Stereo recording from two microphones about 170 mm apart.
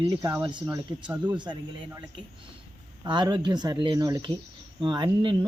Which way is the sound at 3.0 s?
25° right (ahead or behind).